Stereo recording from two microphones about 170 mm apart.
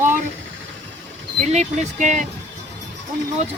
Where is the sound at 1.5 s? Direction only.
45° right (ahead or behind).